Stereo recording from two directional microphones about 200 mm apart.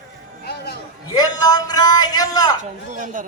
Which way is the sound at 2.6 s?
40° right (ahead or behind).